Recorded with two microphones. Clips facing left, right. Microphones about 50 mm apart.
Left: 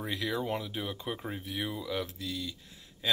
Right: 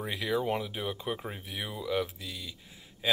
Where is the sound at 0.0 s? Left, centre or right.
Centre.